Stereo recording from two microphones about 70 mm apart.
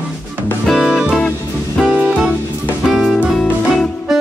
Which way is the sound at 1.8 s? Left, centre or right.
Right.